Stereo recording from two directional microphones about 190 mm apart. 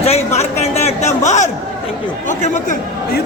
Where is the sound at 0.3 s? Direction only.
35° left (ahead or behind).